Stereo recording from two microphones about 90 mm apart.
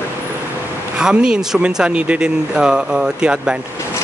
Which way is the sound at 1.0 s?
10° right (ahead or behind).